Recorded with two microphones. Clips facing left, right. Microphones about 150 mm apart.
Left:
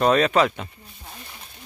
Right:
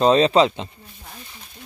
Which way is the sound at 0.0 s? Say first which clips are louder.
Right 3 dB; 25° right (ahead or behind).